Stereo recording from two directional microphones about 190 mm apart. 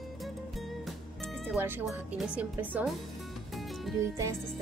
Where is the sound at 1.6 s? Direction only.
10° right (ahead or behind).